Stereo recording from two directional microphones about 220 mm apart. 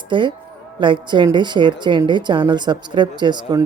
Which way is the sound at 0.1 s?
20° right (ahead or behind).